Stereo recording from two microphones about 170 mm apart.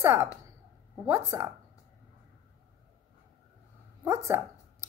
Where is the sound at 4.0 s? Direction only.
15° right (ahead or behind).